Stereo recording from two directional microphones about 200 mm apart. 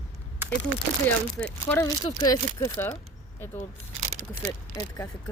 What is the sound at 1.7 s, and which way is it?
Speech, 15° left (ahead or behind).